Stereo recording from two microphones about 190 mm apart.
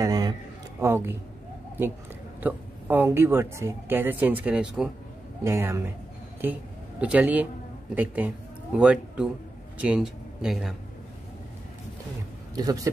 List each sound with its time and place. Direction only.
0.0 s a sound: 20° right (ahead or behind)
2.4 s speech: 10° right (ahead or behind)
12.5 s a man's voice: 20° right (ahead or behind)